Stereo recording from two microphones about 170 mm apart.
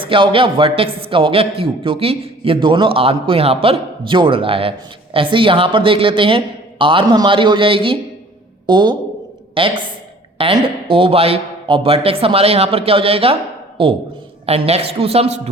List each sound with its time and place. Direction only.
0.0 s a man's voice: 30° right (ahead or behind)